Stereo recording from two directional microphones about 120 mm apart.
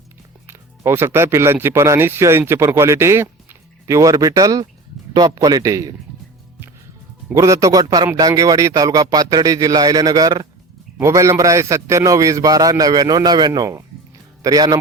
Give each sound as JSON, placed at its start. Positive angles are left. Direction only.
{"t": 0.4, "sound": "a man's voice", "side_deg": -20}
{"t": 7.3, "sound": "a man's voice", "side_deg": -25}